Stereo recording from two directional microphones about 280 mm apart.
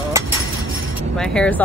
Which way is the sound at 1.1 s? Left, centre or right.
Centre.